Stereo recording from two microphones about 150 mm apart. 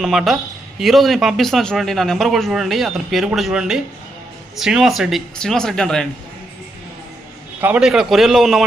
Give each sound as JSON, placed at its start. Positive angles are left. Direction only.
{"t": 0.0, "sound": "a man's voice", "side_deg": 0}
{"t": 7.6, "sound": "a man's voice", "side_deg": -5}